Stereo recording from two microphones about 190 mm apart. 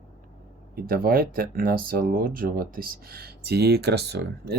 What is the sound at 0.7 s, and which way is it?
Speech, 50° right (ahead or behind).